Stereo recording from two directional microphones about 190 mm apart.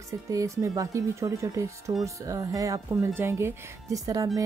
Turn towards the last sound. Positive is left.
turn(degrees=-20)  # may be behind; listen again after turning